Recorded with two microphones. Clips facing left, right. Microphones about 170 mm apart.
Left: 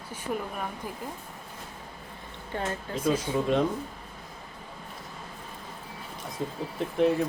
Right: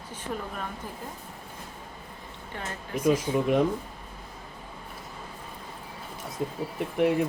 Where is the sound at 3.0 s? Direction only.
15° right (ahead or behind).